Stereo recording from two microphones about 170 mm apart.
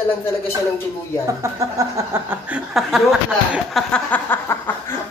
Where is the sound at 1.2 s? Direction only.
15° right (ahead or behind).